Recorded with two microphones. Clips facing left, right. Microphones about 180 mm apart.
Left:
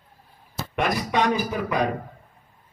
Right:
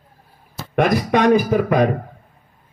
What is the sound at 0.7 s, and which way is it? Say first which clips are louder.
A man's voice: right 7 dB; 55° right (ahead or behind).